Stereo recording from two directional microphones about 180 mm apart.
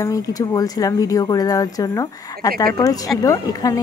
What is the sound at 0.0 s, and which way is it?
A woman's voice, 20° left (ahead or behind).